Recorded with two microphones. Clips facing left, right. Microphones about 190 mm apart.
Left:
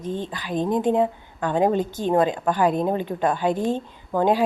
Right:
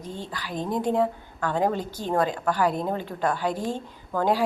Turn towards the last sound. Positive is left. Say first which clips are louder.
# left 4 dB
turn(degrees=20)  # may be behind; listen again after turning